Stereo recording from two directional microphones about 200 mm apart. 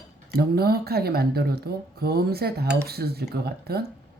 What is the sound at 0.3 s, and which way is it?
Speech, 50° right (ahead or behind).